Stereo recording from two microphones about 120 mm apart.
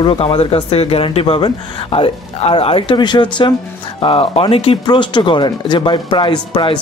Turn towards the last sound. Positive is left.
turn(degrees=40)  # may be behind; listen again after turning